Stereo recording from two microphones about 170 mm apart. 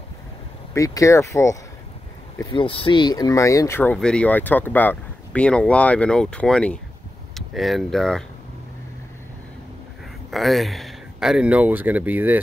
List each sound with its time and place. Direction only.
0.7 s speech: 20° left (ahead or behind)
2.5 s speech: 30° left (ahead or behind); by 8.2 s centre (ahead or behind)
10.3 s speech: centre (ahead or behind)